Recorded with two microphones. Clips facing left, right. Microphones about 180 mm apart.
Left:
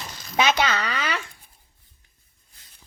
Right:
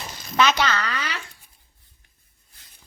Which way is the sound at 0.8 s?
55° left (ahead or behind).